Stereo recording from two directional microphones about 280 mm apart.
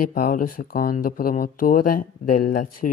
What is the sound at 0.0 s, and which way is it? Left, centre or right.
Speech, left.